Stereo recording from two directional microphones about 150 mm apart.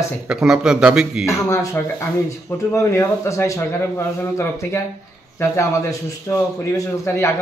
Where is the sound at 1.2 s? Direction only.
20° left (ahead or behind).